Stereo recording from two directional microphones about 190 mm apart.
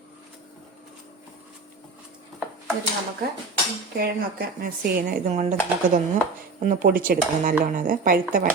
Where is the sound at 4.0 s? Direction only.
55° right (ahead or behind).